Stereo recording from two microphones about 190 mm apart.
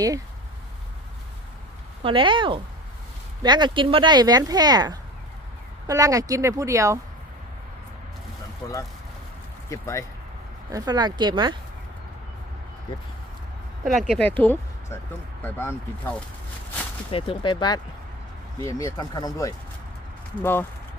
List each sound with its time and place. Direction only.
2.0 s speech: 25° right (ahead or behind)
8.6 s speech: 15° left (ahead or behind)
10.7 s speech: 20° right (ahead or behind)
14.1 s speech: 10° left (ahead or behind)
17.1 s speech: 30° left (ahead or behind); by 20.7 s 10° left (ahead or behind)